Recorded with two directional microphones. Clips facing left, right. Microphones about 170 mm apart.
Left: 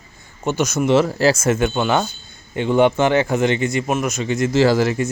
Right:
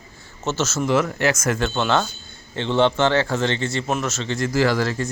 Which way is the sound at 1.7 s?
10° left (ahead or behind).